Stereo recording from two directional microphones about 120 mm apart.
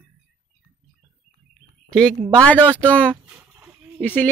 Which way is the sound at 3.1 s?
10° right (ahead or behind).